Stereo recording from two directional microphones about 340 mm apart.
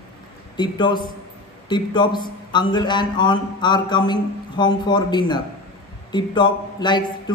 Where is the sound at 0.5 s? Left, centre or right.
Centre.